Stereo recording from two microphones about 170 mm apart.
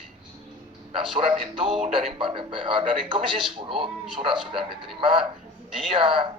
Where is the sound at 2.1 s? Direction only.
30° right (ahead or behind).